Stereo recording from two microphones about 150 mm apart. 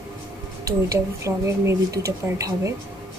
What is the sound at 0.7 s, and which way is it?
Speech, 20° right (ahead or behind).